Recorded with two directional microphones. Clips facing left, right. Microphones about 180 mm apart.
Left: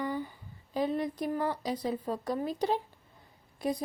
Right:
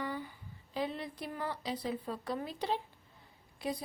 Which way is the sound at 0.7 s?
45° left (ahead or behind).